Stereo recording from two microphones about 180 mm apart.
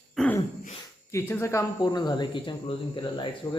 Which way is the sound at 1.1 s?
15° left (ahead or behind).